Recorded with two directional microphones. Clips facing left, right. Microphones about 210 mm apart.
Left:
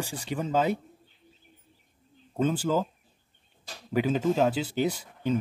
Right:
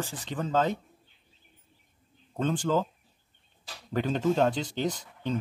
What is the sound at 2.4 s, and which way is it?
Speech, 5° left (ahead or behind).